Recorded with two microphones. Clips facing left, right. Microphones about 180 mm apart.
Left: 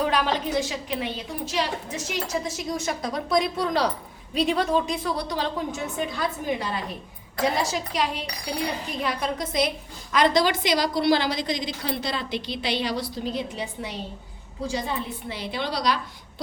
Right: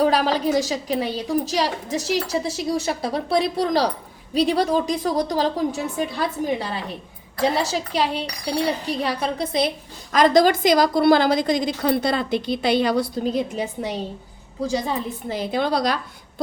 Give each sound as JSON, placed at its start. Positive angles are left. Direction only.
{"t": 0.0, "sound": "a woman's voice", "side_deg": -35}
{"t": 10.1, "sound": "a woman's voice", "side_deg": -45}